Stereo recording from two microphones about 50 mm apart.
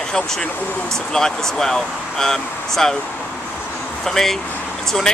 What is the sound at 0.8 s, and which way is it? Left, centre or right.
A man's voice, centre.